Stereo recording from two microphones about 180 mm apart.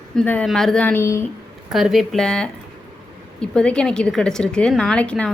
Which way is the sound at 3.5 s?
5° left (ahead or behind).